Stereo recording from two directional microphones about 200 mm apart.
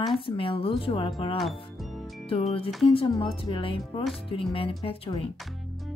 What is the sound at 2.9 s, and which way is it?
Speech, 25° left (ahead or behind).